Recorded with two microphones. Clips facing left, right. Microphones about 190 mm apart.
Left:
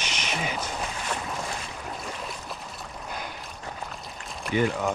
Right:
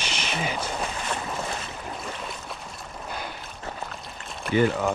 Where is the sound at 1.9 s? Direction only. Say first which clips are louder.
Even; centre (ahead or behind).